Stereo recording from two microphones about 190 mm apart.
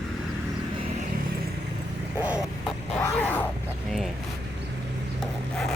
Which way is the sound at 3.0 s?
10° left (ahead or behind).